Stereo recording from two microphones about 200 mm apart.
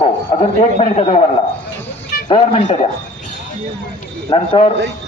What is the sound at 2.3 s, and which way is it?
Speech, 30° left (ahead or behind).